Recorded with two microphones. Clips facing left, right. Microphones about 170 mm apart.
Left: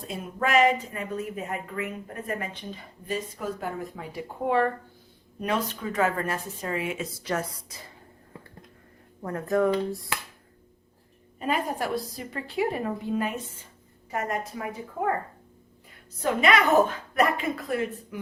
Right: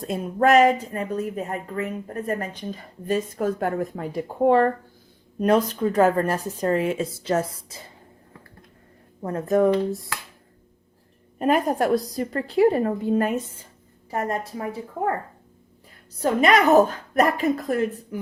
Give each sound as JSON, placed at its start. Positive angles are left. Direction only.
{"t": 0.1, "sound": "a woman's voice", "side_deg": -45}
{"t": 9.2, "sound": "speech", "side_deg": -25}
{"t": 11.3, "sound": "a woman's voice", "side_deg": -55}
{"t": 14.1, "sound": "speech", "side_deg": -30}
{"t": 16.2, "sound": "speech", "side_deg": -40}